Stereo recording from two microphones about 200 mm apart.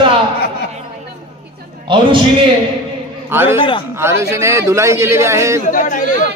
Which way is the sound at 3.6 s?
25° left (ahead or behind).